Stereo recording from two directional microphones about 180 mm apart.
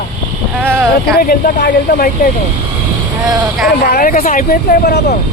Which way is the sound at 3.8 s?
55° left (ahead or behind).